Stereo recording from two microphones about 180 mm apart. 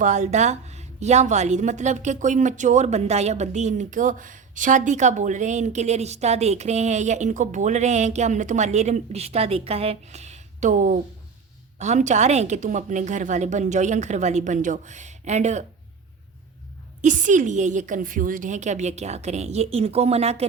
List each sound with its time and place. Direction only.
0.0 s a woman's voice: 40° right (ahead or behind)
17.0 s a woman's voice: 45° right (ahead or behind)